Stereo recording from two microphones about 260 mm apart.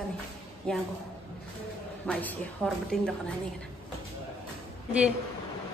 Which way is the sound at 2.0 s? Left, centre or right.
Centre.